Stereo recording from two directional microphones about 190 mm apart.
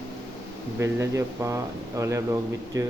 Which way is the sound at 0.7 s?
15° right (ahead or behind).